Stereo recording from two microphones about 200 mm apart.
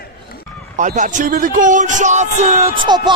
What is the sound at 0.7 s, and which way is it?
Speech, 40° right (ahead or behind).